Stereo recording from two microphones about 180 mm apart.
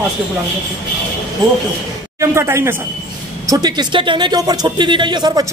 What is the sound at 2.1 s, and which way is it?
A man's voice, 15° right (ahead or behind).